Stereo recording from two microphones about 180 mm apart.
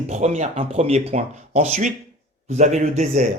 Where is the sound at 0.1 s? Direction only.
40° right (ahead or behind).